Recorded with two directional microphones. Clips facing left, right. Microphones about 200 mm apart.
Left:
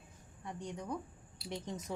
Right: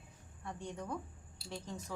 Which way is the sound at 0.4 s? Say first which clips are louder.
Left 1 dB; 15° left (ahead or behind).